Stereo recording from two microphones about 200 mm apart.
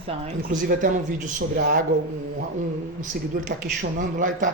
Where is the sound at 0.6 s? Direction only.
40° right (ahead or behind).